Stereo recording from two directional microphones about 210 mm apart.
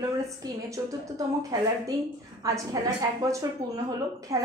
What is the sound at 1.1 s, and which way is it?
A woman's voice, 15° right (ahead or behind).